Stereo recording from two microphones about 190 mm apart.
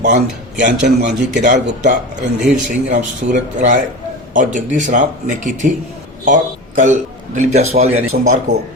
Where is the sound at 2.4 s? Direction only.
Centre (ahead or behind).